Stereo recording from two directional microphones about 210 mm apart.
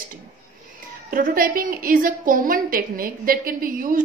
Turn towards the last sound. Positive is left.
turn(degrees=-40)  # may be behind; listen again after turning